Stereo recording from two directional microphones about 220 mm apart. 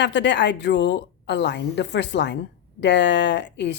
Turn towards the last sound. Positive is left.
turn(degrees=50)  # may be behind; listen again after turning